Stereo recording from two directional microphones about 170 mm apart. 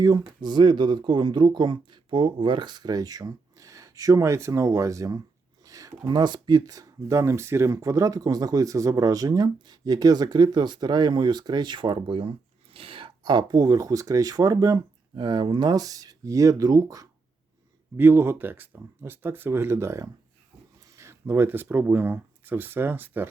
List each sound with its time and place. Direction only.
0.0 s speech: 25° right (ahead or behind)